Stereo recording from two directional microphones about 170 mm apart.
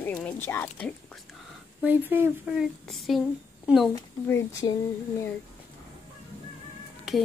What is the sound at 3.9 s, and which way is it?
Speech, 15° left (ahead or behind).